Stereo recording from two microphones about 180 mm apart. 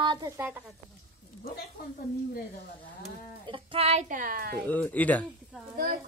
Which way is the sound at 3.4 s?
30° right (ahead or behind).